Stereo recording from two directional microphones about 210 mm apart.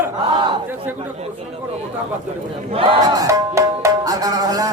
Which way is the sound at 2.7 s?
25° right (ahead or behind).